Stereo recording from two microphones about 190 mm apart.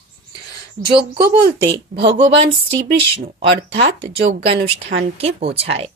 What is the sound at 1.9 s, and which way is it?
Speech, 50° right (ahead or behind).